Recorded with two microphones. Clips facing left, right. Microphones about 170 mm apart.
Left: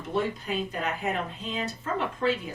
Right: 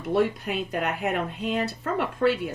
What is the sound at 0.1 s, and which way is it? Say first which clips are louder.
Speech: right 5 dB; 65° right (ahead or behind).